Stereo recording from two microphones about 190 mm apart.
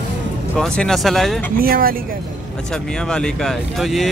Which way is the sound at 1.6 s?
50° right (ahead or behind).